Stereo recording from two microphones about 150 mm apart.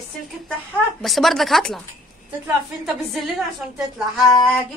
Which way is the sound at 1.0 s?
Centre (ahead or behind).